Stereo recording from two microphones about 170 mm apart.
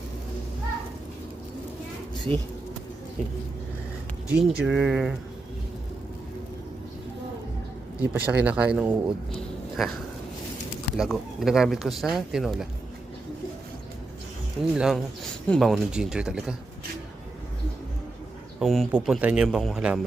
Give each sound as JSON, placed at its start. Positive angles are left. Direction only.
{"t": 2.3, "sound": "speech", "side_deg": -35}
{"t": 4.3, "sound": "speech", "side_deg": -5}
{"t": 7.9, "sound": "speech", "side_deg": -10}
{"t": 14.8, "sound": "speech", "side_deg": -5}
{"t": 18.6, "sound": "speech", "side_deg": 0}